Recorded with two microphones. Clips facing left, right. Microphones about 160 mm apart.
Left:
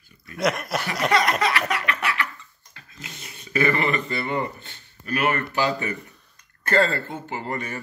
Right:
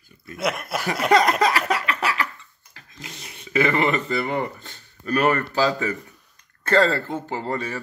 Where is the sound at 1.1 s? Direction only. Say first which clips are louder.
Right 5 dB; 40° right (ahead or behind).